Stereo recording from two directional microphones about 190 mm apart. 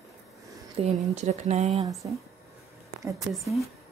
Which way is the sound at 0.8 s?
35° right (ahead or behind).